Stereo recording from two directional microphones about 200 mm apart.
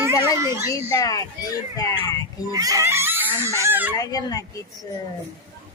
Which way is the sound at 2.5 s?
15° right (ahead or behind).